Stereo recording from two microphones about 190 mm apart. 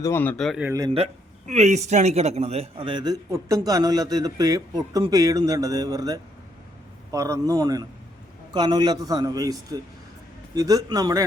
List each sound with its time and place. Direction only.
0.0 s a man's voice: 10° left (ahead or behind)
0.7 s speech: 20° right (ahead or behind)
0.9 s a man's voice: 35° right (ahead or behind); by 11.3 s 20° right (ahead or behind)